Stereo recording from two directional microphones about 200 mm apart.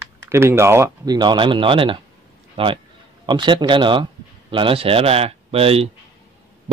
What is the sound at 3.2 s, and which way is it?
Speech, 25° right (ahead or behind).